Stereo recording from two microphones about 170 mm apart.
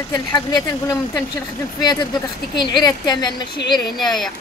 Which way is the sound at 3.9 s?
Centre (ahead or behind).